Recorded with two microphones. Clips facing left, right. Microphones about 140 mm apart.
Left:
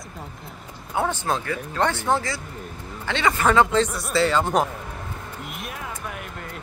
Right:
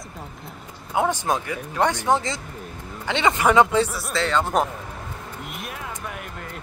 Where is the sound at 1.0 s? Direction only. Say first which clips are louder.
Right 2 dB; 15° right (ahead or behind).